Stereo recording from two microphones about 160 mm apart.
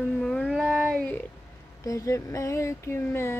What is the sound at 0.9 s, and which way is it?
Speech, 5° left (ahead or behind).